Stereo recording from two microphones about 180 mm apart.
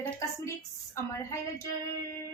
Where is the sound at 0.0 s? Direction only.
15° left (ahead or behind).